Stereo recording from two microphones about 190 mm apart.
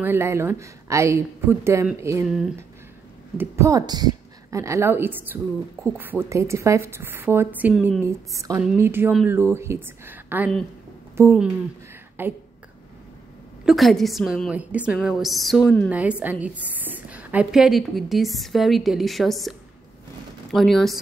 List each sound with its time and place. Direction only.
0.0 s a woman's voice: 10° right (ahead or behind)
2.2 s a woman's voice: centre (ahead or behind)
3.3 s a woman's voice: 15° right (ahead or behind)
12.2 s a woman's voice: 10° right (ahead or behind)
13.7 s a woman's voice: centre (ahead or behind)
15.9 s a woman's voice: 5° right (ahead or behind)
20.5 s a woman's voice: centre (ahead or behind)